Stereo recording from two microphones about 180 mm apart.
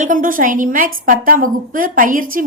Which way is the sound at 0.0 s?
50° right (ahead or behind).